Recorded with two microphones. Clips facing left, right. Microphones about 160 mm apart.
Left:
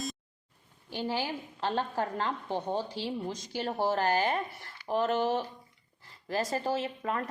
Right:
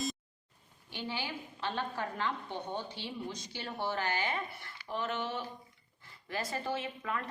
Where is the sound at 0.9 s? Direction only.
40° left (ahead or behind).